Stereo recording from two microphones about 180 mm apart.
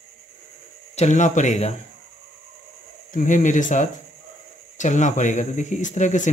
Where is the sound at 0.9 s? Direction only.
40° left (ahead or behind).